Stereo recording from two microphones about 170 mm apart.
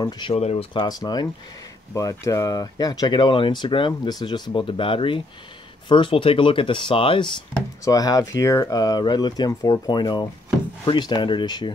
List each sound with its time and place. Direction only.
0.3 s speech: 40° left (ahead or behind)
0.7 s speech: 25° left (ahead or behind)